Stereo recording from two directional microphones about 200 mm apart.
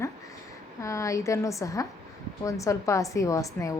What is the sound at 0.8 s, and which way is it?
A woman's voice, 15° left (ahead or behind).